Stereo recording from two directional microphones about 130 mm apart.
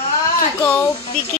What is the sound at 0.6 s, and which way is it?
Speech, 15° left (ahead or behind).